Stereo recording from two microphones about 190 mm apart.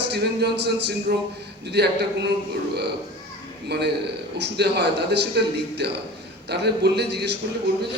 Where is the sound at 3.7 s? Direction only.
60° right (ahead or behind).